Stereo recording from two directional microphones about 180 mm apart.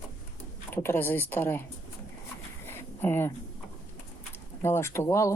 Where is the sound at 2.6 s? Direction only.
10° left (ahead or behind).